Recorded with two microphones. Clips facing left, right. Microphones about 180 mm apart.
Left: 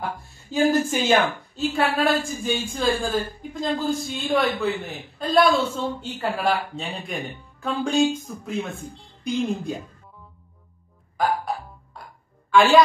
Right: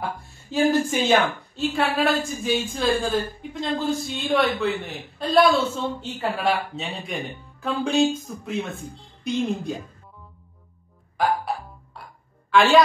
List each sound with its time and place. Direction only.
0.0 s a man's voice: centre (ahead or behind)
11.1 s music: centre (ahead or behind)
12.4 s a woman's voice: centre (ahead or behind)